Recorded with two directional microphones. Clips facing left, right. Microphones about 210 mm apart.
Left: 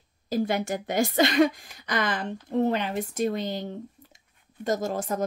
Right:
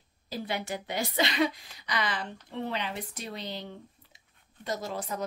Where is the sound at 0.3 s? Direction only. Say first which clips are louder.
Left 8 dB; 45° left (ahead or behind).